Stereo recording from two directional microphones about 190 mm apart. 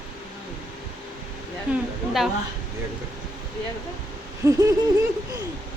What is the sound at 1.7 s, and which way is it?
Speech, centre (ahead or behind).